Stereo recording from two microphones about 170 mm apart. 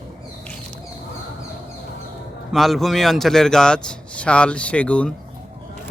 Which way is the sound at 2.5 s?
Centre (ahead or behind).